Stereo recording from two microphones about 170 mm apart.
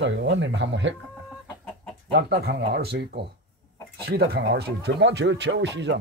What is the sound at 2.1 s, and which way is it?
Speech, 75° right (ahead or behind).